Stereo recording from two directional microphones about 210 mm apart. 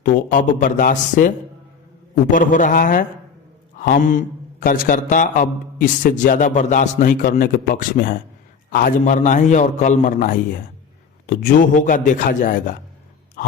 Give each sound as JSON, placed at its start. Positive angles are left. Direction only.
{"t": 0.0, "sound": "a man's voice", "side_deg": 40}
{"t": 2.3, "sound": "a man's voice", "side_deg": 40}
{"t": 3.8, "sound": "a sound", "side_deg": 40}
{"t": 4.6, "sound": "a man's voice", "side_deg": 40}